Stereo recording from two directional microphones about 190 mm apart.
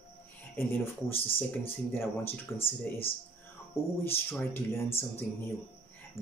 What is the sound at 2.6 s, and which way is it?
Speech, 30° left (ahead or behind).